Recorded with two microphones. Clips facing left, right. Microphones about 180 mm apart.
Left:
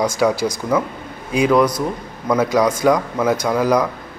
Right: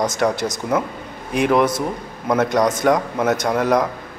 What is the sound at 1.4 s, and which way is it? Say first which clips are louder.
A man's voice: left 2 dB; centre (ahead or behind).